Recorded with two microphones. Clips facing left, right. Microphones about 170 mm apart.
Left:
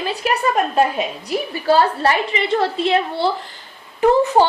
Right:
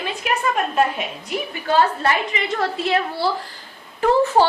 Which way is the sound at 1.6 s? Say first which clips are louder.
Left 3 dB; 35° left (ahead or behind).